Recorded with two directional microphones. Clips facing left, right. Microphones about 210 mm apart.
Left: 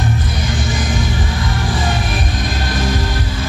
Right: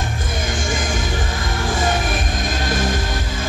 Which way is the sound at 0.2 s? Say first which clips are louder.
Left 3 dB; 45° right (ahead or behind).